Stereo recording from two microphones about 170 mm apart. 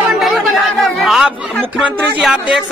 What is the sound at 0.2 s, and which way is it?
Chatter, centre (ahead or behind).